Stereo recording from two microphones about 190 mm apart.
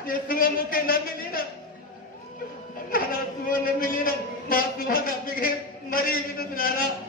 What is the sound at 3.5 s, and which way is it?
A man's voice, 50° left (ahead or behind).